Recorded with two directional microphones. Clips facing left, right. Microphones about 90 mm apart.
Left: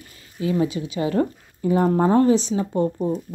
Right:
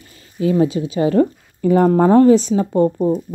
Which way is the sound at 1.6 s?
55° right (ahead or behind).